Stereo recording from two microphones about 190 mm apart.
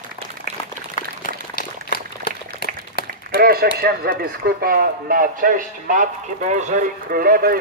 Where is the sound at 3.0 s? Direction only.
55° right (ahead or behind).